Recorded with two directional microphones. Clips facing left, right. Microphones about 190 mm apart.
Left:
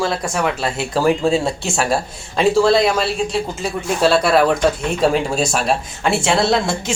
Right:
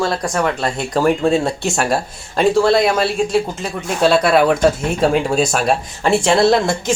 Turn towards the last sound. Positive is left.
turn(degrees=0)  # may be behind; listen again after turning